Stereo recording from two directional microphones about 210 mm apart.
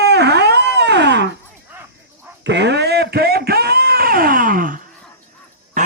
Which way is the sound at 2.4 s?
55° right (ahead or behind).